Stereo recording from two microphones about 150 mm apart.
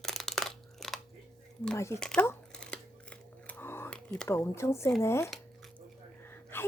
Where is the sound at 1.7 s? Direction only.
20° left (ahead or behind).